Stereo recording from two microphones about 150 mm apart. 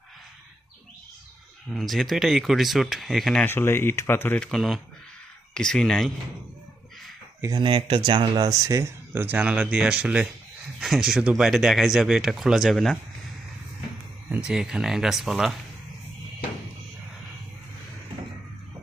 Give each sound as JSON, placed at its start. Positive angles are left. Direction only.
{"t": 1.7, "sound": "speech", "side_deg": 0}
{"t": 3.4, "sound": "speech", "side_deg": 15}
{"t": 7.6, "sound": "speech", "side_deg": -35}
{"t": 14.3, "sound": "speech", "side_deg": -10}